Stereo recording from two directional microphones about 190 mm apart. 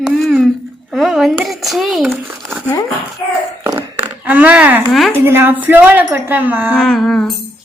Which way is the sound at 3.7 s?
10° right (ahead or behind).